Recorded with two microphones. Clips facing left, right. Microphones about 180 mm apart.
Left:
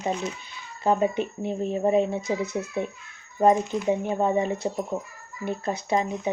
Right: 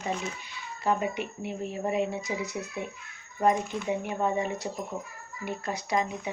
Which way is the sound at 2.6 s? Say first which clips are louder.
Left 5 dB; 45° left (ahead or behind).